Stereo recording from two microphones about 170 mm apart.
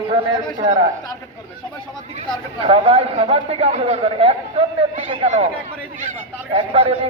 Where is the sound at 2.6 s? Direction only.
35° right (ahead or behind).